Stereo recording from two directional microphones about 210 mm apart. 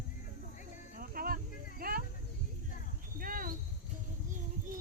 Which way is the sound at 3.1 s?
40° right (ahead or behind).